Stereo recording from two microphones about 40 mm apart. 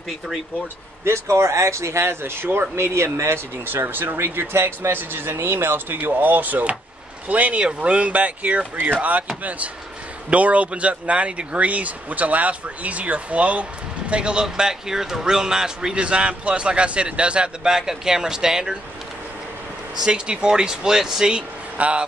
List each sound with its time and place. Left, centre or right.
2.0 s speech: right
2.8 s speech: right
3.7 s speech: right
5.9 s speech: right
7.6 s speech: right; by 16.0 s centre
16.0 s a man's voice: right
17.6 s speech: centre
20.1 s speech: right
21.7 s speech: right